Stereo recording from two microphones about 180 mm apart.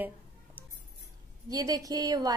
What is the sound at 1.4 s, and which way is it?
Speech, 20° right (ahead or behind).